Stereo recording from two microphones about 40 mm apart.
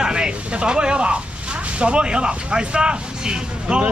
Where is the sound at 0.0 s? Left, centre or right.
Centre.